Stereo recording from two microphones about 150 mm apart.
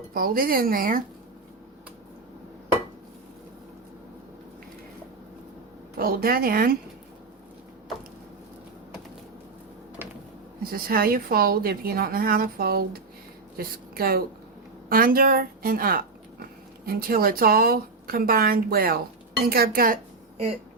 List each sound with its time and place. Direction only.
0.1 s a woman's voice: 75° right (ahead or behind)
6.0 s a woman's voice: 80° right
10.0 s a sound: 15° right (ahead or behind)
10.6 s a woman's voice: 75° right (ahead or behind)
19.5 s a woman's voice: 90° right